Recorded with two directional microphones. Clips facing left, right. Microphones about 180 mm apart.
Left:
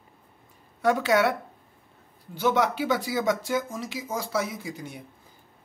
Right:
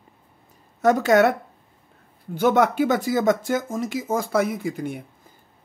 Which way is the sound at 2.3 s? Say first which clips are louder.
Right 5 dB; 50° right (ahead or behind).